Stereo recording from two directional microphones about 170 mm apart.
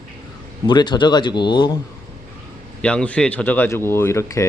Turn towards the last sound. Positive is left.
turn(degrees=15)  # may be behind; listen again after turning